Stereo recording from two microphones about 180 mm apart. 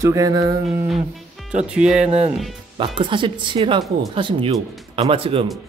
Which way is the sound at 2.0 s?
35° right (ahead or behind).